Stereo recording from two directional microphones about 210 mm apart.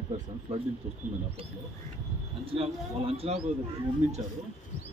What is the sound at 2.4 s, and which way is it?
Speech, 25° right (ahead or behind).